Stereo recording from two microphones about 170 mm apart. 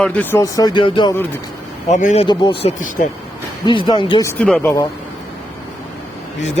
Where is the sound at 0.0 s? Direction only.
10° left (ahead or behind); by 1.1 s 25° left (ahead or behind).